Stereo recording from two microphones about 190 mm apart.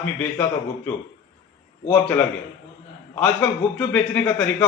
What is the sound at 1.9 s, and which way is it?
A man's voice, 10° left (ahead or behind).